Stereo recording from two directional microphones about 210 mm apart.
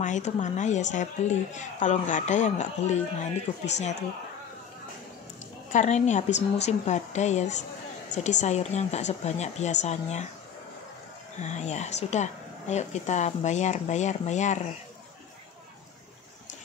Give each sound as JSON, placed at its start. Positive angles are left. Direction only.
{"t": 0.0, "sound": "a woman's voice", "side_deg": 35}
{"t": 5.7, "sound": "a woman's voice", "side_deg": 35}
{"t": 11.3, "sound": "a woman's voice", "side_deg": 35}